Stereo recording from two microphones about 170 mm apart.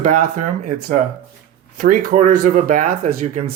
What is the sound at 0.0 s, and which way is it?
Speech, 45° right (ahead or behind).